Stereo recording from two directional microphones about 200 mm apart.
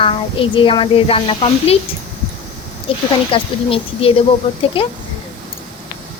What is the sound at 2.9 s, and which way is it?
Speech, 25° left (ahead or behind).